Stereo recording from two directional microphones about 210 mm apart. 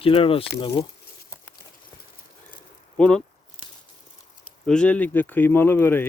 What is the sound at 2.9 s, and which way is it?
Speech, 5° left (ahead or behind).